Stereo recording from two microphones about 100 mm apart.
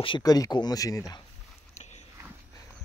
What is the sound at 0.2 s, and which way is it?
Speech, 40° left (ahead or behind).